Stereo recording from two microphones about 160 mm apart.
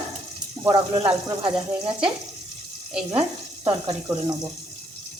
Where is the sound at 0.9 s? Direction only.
35° right (ahead or behind).